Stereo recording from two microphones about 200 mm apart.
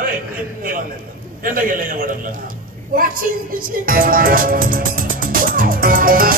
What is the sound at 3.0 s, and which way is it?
Music, 45° right (ahead or behind).